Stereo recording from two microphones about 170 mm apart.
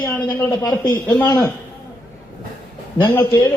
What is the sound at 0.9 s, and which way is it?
Speech, 10° left (ahead or behind).